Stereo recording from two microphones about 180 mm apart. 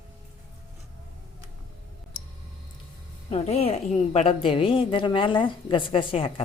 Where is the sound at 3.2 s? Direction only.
35° left (ahead or behind).